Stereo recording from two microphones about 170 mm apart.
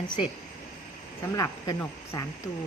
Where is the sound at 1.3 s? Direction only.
20° left (ahead or behind).